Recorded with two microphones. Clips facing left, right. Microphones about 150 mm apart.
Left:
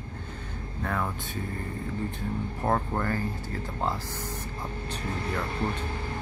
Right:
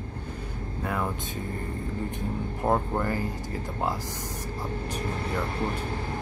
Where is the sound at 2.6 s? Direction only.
15° right (ahead or behind).